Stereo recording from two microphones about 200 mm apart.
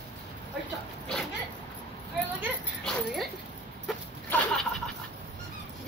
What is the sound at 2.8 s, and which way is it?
Speech, centre (ahead or behind).